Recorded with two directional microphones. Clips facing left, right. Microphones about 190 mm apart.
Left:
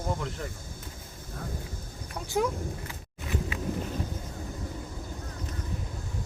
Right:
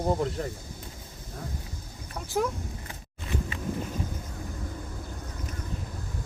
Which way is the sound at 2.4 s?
Centre (ahead or behind).